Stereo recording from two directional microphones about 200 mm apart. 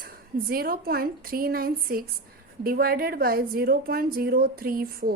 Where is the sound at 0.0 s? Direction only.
50° right (ahead or behind).